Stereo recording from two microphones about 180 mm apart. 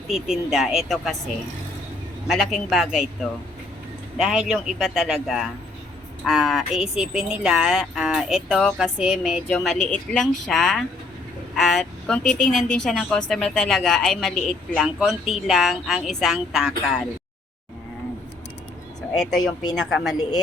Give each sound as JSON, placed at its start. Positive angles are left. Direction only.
{"t": 0.1, "sound": "a woman's voice", "side_deg": 0}
{"t": 2.2, "sound": "a woman's voice", "side_deg": 0}
{"t": 4.2, "sound": "a woman's voice", "side_deg": -5}
{"t": 12.3, "sound": "a woman's voice", "side_deg": 50}
{"t": 12.5, "sound": "a woman's voice", "side_deg": 5}
{"t": 19.1, "sound": "a woman's voice", "side_deg": 0}